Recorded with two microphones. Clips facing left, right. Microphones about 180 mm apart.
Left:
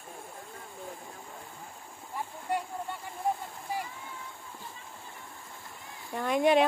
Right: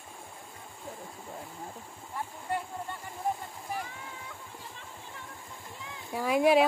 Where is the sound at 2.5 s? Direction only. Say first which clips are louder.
Left 2 dB; 15° left (ahead or behind).